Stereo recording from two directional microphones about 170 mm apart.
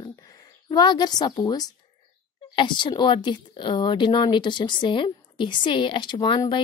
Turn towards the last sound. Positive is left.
turn(degrees=25)  # may be behind; listen again after turning